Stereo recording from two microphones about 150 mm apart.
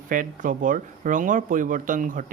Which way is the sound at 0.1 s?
65° right (ahead or behind).